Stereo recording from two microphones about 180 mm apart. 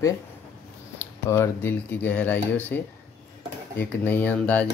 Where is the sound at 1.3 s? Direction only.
15° left (ahead or behind).